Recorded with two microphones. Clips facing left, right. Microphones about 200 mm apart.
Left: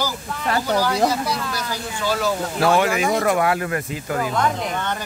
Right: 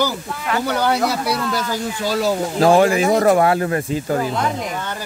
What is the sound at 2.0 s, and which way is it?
Speech, 35° right (ahead or behind).